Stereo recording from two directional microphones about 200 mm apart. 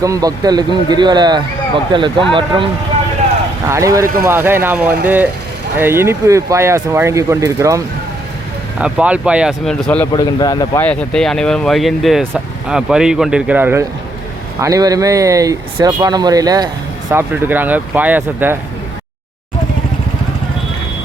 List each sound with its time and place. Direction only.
0.0 s speech: 15° right (ahead or behind)
8.8 s speech: 5° right (ahead or behind)
10.1 s speech: 20° left (ahead or behind)
10.8 s speech: 5° left (ahead or behind)